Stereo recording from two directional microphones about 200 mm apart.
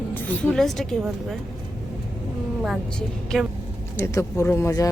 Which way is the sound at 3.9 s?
15° left (ahead or behind).